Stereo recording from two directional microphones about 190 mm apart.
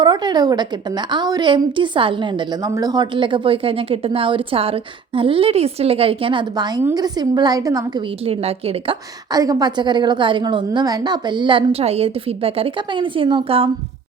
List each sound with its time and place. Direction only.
0.0 s a woman's voice: 25° right (ahead or behind)
8.2 s a woman's voice: 30° right (ahead or behind)
9.3 s a woman's voice: 20° right (ahead or behind)